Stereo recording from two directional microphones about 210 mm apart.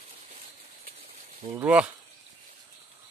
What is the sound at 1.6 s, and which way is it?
Speech, 5° right (ahead or behind).